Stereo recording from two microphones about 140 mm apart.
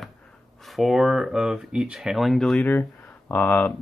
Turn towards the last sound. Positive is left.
turn(degrees=10)  # may be behind; listen again after turning